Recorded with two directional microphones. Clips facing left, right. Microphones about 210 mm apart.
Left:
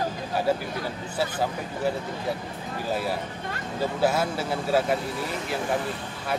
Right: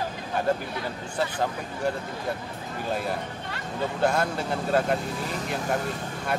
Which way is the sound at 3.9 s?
5° left (ahead or behind).